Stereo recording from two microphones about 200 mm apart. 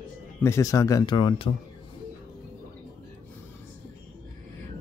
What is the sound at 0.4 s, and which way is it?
Speech, 15° left (ahead or behind).